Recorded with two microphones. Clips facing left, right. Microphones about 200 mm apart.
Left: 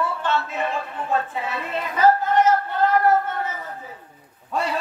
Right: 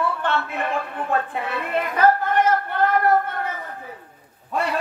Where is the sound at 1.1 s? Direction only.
60° right (ahead or behind).